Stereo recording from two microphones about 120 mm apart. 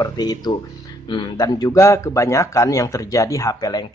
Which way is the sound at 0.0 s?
35° left (ahead or behind).